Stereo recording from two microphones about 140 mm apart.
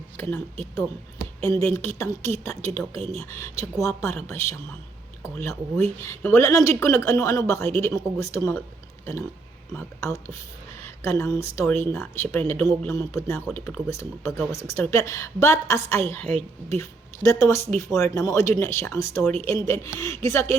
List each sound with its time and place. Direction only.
0.2 s a woman's voice: 15° left (ahead or behind)
9.7 s a woman's voice: 20° left (ahead or behind)